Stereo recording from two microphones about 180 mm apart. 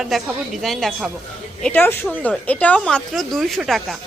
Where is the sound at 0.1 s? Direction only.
Centre (ahead or behind).